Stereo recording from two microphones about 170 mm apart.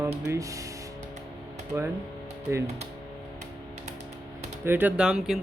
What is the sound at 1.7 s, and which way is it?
Speech, 15° right (ahead or behind).